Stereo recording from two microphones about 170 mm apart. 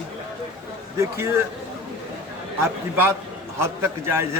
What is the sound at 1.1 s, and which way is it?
Speech, 15° right (ahead or behind).